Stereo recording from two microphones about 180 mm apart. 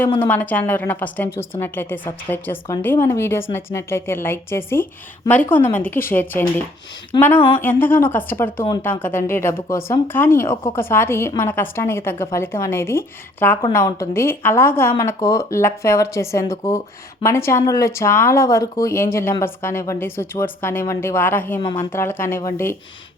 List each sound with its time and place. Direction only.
0.2 s speech: 10° left (ahead or behind)
21.6 s speech: 25° left (ahead or behind)
21.9 s speech: 15° left (ahead or behind)